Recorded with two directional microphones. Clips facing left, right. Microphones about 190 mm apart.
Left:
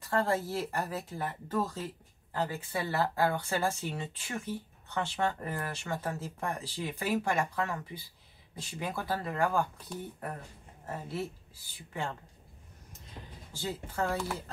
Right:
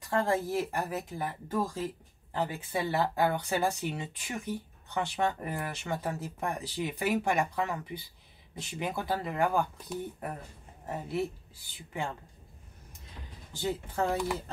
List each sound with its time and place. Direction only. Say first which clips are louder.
0.0 s speech: right 1 dB; 15° right (ahead or behind)
10.9 s speech: right 4 dB; 15° right (ahead or behind)
13.5 s speech: right 5 dB; 20° right (ahead or behind)